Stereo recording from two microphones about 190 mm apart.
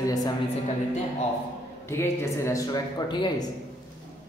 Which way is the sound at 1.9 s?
15° left (ahead or behind).